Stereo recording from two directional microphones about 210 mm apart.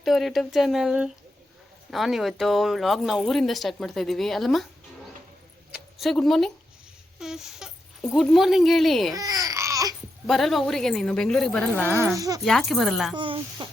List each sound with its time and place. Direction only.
0.0 s speech: centre (ahead or behind)
6.0 s speech: centre (ahead or behind)
9.1 s speech: 15° right (ahead or behind)
10.2 s speech: centre (ahead or behind)
11.9 s speech: 10° right (ahead or behind)
12.5 s speech: centre (ahead or behind)
13.1 s speech: 25° right (ahead or behind)